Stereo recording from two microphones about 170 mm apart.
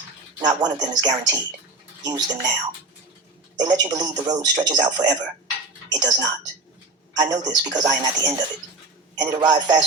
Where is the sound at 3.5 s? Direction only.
25° right (ahead or behind).